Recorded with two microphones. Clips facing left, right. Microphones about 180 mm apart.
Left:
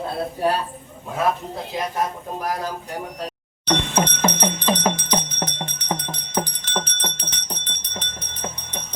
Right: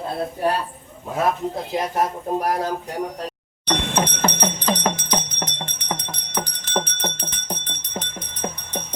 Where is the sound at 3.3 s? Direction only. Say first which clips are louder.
Left 2 dB; 10° left (ahead or behind).